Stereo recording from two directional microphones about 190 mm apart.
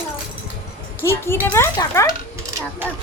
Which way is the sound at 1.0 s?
10° left (ahead or behind).